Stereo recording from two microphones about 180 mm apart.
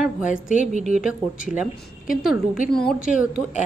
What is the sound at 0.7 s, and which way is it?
Speech, 40° right (ahead or behind).